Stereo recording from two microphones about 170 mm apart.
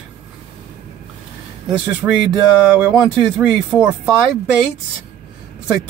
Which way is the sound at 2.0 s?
10° right (ahead or behind).